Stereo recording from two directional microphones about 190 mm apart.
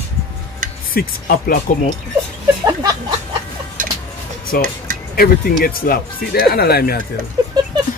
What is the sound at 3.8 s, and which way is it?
Vehicle, 45° right (ahead or behind).